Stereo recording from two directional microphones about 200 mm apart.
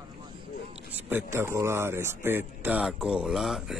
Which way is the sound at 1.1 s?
10° right (ahead or behind).